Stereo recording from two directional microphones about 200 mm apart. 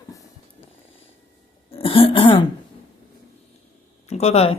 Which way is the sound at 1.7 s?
25° left (ahead or behind).